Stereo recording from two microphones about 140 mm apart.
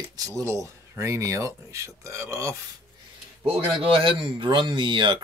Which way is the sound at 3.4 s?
40° right (ahead or behind).